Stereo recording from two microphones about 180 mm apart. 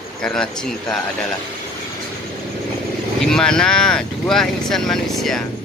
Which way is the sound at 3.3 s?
5° left (ahead or behind).